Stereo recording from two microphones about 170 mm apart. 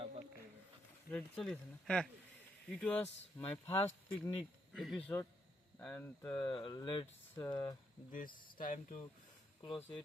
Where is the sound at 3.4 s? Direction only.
35° left (ahead or behind).